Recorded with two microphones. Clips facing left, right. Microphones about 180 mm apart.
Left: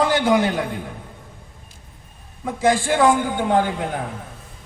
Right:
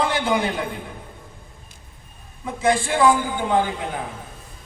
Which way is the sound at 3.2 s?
60° left (ahead or behind).